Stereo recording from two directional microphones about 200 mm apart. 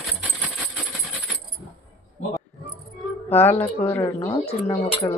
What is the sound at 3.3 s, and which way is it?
Speech, 10° left (ahead or behind).